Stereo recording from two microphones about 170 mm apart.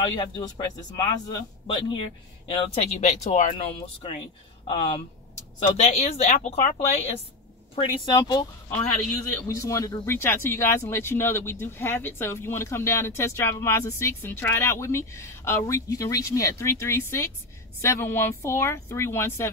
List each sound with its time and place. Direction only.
0.0 s a man's voice: 25° left (ahead or behind); by 6.7 s 45° left (ahead or behind)
7.7 s speech: 25° left (ahead or behind)